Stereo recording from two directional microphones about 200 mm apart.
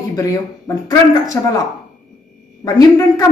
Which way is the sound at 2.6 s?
15° left (ahead or behind).